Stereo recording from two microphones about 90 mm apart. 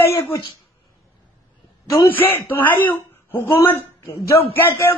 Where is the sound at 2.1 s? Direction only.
20° left (ahead or behind).